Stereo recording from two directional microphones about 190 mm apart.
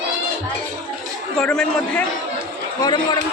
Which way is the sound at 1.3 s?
5° left (ahead or behind).